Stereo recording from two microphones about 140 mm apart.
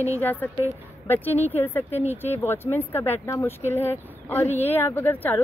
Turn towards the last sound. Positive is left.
turn(degrees=15)  # may be behind; listen again after turning